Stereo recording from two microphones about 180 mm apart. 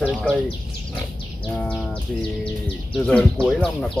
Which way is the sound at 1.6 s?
5° left (ahead or behind).